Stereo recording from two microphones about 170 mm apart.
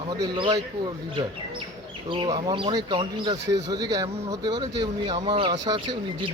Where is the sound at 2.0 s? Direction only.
30° right (ahead or behind).